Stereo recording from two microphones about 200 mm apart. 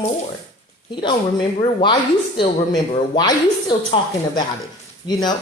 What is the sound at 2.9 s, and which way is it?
A woman's voice, 20° left (ahead or behind).